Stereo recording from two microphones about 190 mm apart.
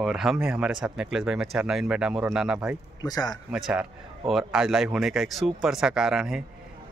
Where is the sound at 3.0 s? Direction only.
20° left (ahead or behind).